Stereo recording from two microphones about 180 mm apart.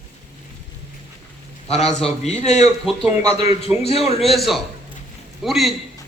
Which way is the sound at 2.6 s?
Centre (ahead or behind).